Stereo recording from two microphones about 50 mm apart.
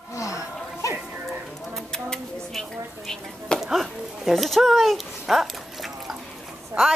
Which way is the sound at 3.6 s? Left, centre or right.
Centre.